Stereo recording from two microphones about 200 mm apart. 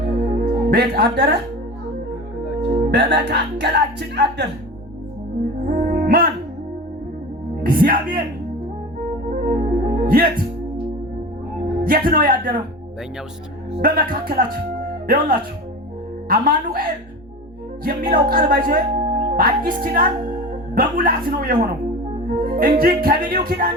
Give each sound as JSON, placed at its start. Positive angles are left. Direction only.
{"t": 0.0, "sound": "music", "side_deg": -50}
{"t": 2.9, "sound": "speech", "side_deg": -55}
{"t": 5.6, "sound": "music", "side_deg": -50}
{"t": 7.6, "sound": "speech", "side_deg": -45}
{"t": 9.4, "sound": "music", "side_deg": -45}
{"t": 11.8, "sound": "speech", "side_deg": -50}
{"t": 13.8, "sound": "speech", "side_deg": -45}
{"t": 17.8, "sound": "speech", "side_deg": -50}
{"t": 22.4, "sound": "music", "side_deg": -50}
{"t": 23.0, "sound": "speech", "side_deg": -45}